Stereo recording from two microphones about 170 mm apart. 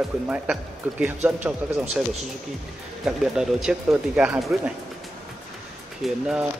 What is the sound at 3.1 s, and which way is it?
Speech, 5° right (ahead or behind).